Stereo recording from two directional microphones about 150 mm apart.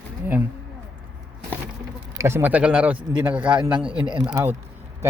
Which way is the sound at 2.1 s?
15° right (ahead or behind).